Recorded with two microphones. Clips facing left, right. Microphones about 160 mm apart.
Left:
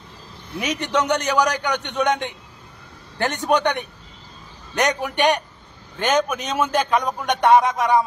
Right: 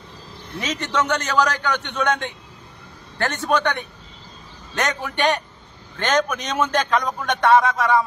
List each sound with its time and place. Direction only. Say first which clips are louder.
0.6 s a man's voice: left 1 dB; 15° left (ahead or behind)